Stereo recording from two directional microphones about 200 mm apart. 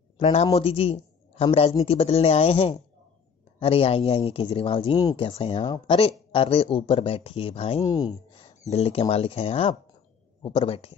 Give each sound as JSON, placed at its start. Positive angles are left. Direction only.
{"t": 0.2, "sound": "a man's voice", "side_deg": 30}
{"t": 8.5, "sound": "speech", "side_deg": 30}